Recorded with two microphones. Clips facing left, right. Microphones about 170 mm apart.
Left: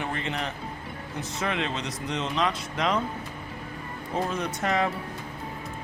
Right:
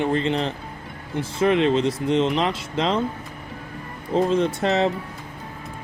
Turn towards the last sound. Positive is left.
turn(degrees=-25)  # may be behind; listen again after turning